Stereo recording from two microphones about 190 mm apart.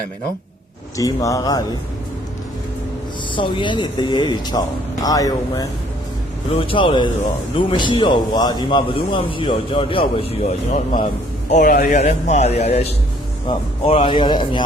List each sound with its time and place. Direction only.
0.9 s a man's voice: 15° left (ahead or behind)
3.3 s a man's voice: 25° left (ahead or behind)